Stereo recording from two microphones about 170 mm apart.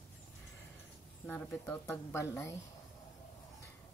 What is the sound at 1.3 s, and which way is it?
Speech, 10° left (ahead or behind).